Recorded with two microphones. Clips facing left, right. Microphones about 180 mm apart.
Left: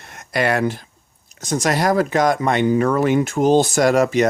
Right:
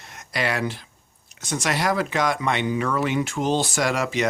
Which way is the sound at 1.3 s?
40° left (ahead or behind).